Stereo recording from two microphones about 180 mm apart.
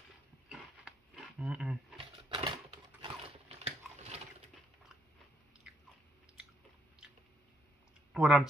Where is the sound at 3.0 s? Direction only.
35° right (ahead or behind).